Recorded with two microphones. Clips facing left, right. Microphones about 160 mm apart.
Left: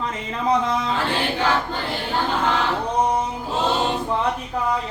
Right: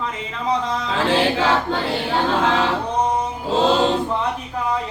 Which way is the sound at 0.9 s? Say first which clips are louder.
Right 5 dB; 90° right.